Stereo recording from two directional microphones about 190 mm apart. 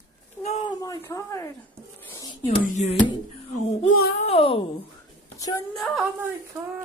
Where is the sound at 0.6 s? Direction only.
20° left (ahead or behind).